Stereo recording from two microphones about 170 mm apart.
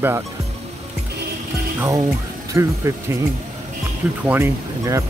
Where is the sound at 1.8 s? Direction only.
20° right (ahead or behind).